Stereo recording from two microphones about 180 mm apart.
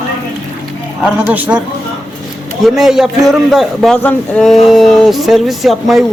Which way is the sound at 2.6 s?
Centre (ahead or behind).